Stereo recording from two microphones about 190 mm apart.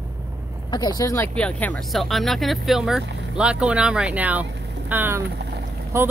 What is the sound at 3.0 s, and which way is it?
Speech, 65° right (ahead or behind).